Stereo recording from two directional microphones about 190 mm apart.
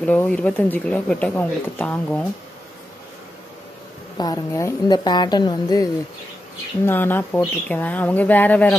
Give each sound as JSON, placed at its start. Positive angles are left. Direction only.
{"t": 0.0, "sound": "speech", "side_deg": 5}
{"t": 4.2, "sound": "speech", "side_deg": 20}
{"t": 6.9, "sound": "speech", "side_deg": 10}